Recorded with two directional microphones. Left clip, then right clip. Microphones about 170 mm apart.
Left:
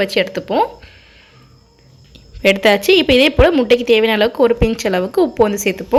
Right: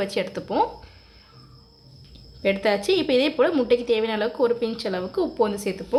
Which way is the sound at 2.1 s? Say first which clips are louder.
Left 10 dB; 25° left (ahead or behind).